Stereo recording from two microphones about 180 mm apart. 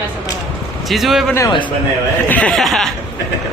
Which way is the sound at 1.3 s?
20° left (ahead or behind).